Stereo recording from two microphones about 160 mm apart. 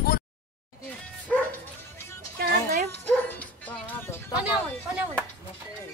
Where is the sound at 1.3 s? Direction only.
5° left (ahead or behind).